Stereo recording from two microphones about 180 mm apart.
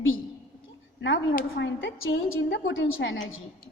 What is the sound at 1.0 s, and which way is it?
A woman's voice, 90° left.